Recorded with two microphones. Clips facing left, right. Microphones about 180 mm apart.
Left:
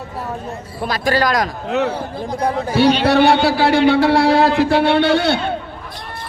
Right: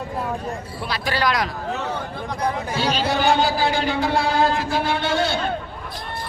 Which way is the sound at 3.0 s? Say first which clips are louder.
Left 6 dB; 70° left (ahead or behind).